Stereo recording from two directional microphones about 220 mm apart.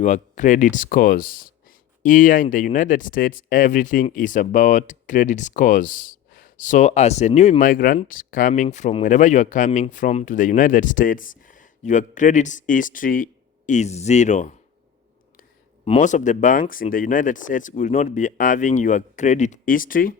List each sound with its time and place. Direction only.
0.0 s speech: 35° left (ahead or behind)
15.8 s speech: 30° left (ahead or behind)